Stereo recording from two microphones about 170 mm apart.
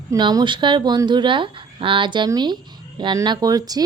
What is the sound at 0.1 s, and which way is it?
Speech, 25° right (ahead or behind).